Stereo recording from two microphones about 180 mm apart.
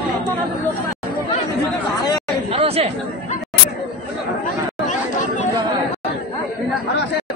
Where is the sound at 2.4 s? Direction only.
35° right (ahead or behind).